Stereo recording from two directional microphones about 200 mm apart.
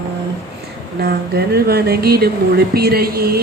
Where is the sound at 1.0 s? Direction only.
50° right (ahead or behind).